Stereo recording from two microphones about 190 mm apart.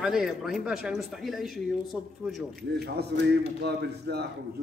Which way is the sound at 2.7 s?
55° right (ahead or behind).